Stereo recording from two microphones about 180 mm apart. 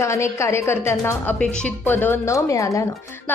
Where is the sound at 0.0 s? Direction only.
15° left (ahead or behind).